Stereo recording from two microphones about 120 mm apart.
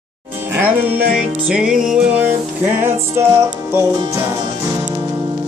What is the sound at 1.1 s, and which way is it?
Music, 5° right (ahead or behind).